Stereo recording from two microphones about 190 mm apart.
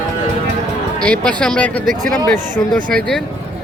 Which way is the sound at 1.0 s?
5° left (ahead or behind).